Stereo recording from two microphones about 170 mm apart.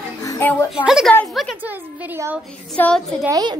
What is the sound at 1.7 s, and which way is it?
Speech, 10° right (ahead or behind).